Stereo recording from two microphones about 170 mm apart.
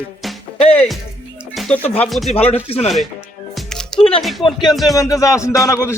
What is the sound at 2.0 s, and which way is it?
Speech, centre (ahead or behind).